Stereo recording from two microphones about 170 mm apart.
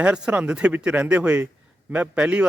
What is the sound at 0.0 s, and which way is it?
Speech, 10° right (ahead or behind).